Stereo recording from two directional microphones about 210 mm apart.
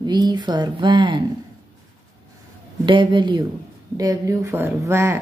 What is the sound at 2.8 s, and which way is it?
Speech, 25° right (ahead or behind).